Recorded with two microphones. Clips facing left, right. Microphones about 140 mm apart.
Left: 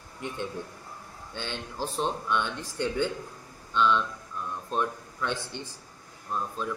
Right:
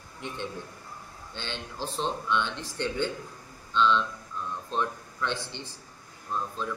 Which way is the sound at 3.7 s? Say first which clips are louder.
Even; 10° left (ahead or behind).